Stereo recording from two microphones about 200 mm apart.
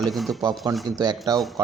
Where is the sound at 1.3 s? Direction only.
20° right (ahead or behind).